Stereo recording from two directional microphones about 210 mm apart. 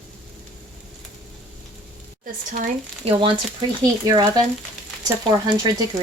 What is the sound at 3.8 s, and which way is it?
Speech, 15° right (ahead or behind).